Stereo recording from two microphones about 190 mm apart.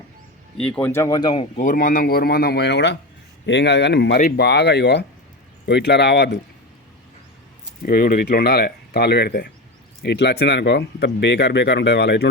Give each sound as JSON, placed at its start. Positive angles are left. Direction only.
{"t": 0.5, "sound": "speech", "side_deg": 5}
{"t": 1.5, "sound": "speech", "side_deg": 45}
{"t": 7.8, "sound": "speech", "side_deg": 50}